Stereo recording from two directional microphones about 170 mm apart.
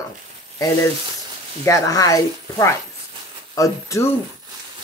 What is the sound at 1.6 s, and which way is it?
A woman's voice, 20° left (ahead or behind).